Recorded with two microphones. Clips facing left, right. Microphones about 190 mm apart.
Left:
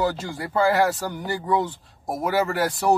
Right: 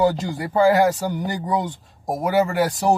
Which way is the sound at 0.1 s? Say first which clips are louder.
Right 3 dB; 20° right (ahead or behind).